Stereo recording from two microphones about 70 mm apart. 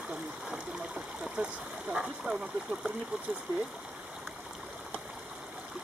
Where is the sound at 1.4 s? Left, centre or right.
Centre.